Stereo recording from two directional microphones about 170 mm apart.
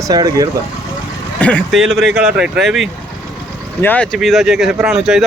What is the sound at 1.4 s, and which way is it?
Speech, 5° left (ahead or behind).